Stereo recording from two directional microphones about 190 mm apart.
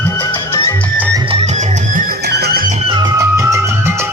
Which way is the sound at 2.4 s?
55° right (ahead or behind).